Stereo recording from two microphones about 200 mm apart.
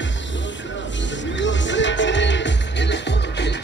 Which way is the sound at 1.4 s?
65° left (ahead or behind).